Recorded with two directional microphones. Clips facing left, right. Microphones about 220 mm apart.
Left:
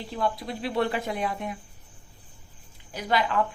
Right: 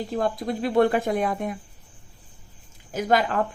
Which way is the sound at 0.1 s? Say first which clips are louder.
Right 2 dB; 45° right (ahead or behind).